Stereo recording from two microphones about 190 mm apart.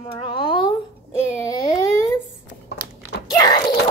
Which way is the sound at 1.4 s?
20° left (ahead or behind).